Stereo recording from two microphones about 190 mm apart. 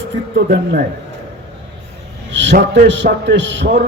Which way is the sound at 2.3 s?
70° right (ahead or behind).